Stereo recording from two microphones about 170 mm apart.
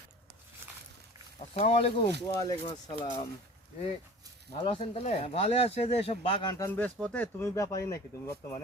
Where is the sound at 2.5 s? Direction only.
25° left (ahead or behind).